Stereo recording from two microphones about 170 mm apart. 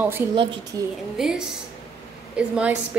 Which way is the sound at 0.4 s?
30° right (ahead or behind).